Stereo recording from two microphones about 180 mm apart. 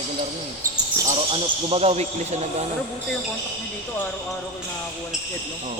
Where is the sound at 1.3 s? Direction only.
35° right (ahead or behind).